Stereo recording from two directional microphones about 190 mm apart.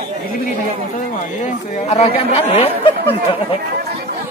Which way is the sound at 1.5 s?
35° left (ahead or behind).